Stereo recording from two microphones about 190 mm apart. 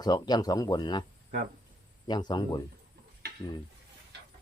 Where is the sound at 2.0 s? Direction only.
20° left (ahead or behind).